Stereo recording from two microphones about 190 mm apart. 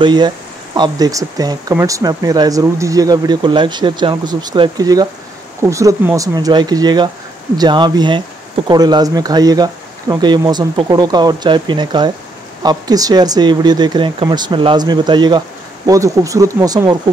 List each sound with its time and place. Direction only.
0.0 s speech: 25° right (ahead or behind)